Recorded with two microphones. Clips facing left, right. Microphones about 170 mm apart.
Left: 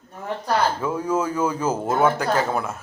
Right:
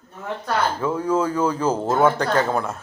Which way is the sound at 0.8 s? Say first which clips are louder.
Right 2 dB; 10° left (ahead or behind).